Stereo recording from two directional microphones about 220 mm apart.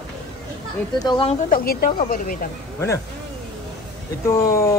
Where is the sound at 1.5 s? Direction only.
40° left (ahead or behind).